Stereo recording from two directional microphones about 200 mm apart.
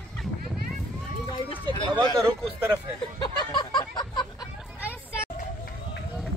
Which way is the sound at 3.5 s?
20° left (ahead or behind).